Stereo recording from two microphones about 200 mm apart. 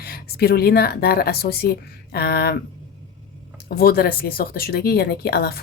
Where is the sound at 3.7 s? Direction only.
50° left (ahead or behind).